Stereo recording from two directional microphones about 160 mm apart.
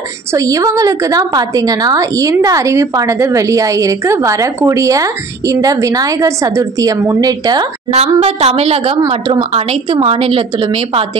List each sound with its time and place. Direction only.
0.3 s a woman's voice: 20° right (ahead or behind)
7.9 s a woman's voice: 40° right (ahead or behind)